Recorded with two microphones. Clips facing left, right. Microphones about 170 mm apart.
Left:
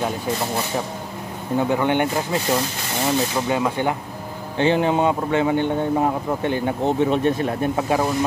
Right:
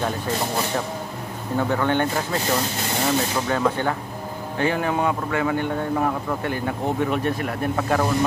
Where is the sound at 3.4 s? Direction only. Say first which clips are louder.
Left 1 dB; 15° left (ahead or behind).